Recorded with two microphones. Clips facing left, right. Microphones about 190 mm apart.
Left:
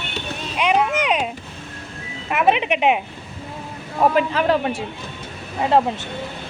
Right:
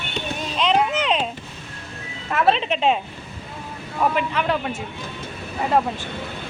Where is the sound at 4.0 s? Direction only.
35° left (ahead or behind).